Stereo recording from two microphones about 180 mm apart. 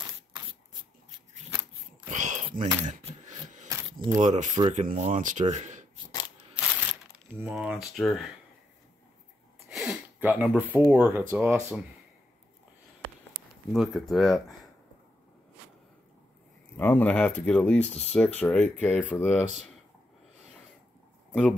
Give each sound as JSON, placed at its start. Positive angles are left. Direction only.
{"t": 2.0, "sound": "a sound", "side_deg": -45}
{"t": 3.6, "sound": "a sound", "side_deg": -20}
{"t": 4.2, "sound": "speech", "side_deg": -40}
{"t": 6.5, "sound": "crumpling", "side_deg": -5}
{"t": 9.7, "sound": "a sound", "side_deg": -5}
{"t": 10.9, "sound": "speech", "side_deg": -10}
{"t": 13.7, "sound": "speech", "side_deg": 0}
{"t": 16.7, "sound": "speech", "side_deg": 10}
{"t": 21.3, "sound": "speech", "side_deg": 5}